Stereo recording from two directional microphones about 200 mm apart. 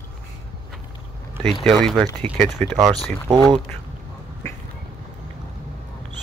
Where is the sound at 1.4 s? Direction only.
5° left (ahead or behind).